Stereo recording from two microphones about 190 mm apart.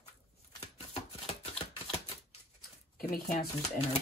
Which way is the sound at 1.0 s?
30° left (ahead or behind).